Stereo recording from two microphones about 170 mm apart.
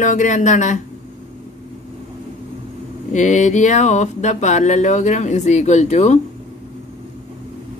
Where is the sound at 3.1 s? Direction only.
45° left (ahead or behind).